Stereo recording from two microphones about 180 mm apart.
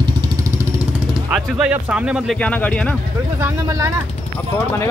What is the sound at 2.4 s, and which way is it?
Speech, 5° left (ahead or behind).